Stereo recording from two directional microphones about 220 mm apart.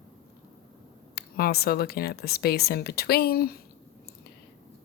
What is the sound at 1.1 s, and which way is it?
Speech, 45° left (ahead or behind).